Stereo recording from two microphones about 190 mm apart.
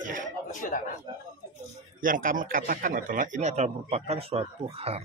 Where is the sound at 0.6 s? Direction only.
45° left (ahead or behind).